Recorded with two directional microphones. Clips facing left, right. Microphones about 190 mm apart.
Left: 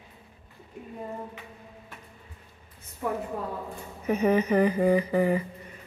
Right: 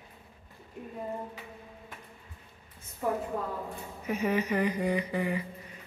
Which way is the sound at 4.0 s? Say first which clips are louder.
Left 6 dB; 35° left (ahead or behind).